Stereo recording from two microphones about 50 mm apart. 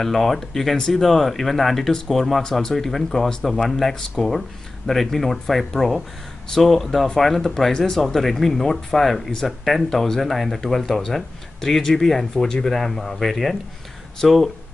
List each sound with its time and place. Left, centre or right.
0.0 s speech: centre